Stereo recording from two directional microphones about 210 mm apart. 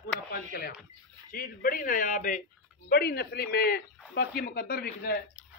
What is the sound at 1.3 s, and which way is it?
Speech, 45° left (ahead or behind).